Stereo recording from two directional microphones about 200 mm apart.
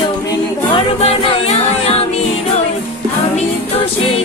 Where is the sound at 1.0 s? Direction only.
30° left (ahead or behind).